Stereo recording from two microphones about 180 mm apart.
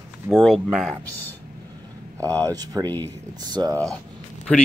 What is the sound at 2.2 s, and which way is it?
Speech, 20° right (ahead or behind).